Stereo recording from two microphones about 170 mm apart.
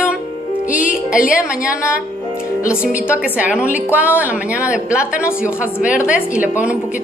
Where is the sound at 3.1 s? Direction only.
10° right (ahead or behind).